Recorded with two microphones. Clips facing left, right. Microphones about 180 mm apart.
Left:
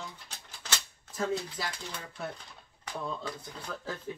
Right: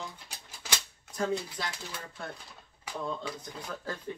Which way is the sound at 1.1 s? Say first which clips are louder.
Right 1 dB; centre (ahead or behind).